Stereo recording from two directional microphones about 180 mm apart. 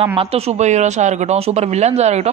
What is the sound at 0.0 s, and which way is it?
Speech, 30° right (ahead or behind).